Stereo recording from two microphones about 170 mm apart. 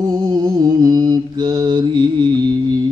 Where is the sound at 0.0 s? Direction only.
25° right (ahead or behind).